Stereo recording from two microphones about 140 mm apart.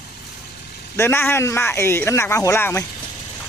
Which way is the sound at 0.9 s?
15° left (ahead or behind).